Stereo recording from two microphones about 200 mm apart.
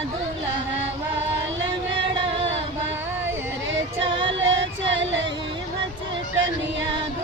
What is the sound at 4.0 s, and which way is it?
Music, 25° right (ahead or behind).